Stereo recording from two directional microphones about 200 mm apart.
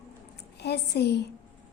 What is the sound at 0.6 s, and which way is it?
Speech, 55° left (ahead or behind).